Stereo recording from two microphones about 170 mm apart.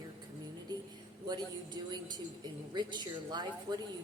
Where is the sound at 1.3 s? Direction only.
25° right (ahead or behind).